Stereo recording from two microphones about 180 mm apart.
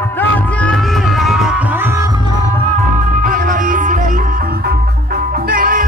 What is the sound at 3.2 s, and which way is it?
Music, 45° right (ahead or behind).